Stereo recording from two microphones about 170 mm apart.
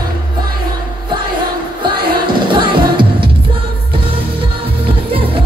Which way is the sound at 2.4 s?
30° right (ahead or behind).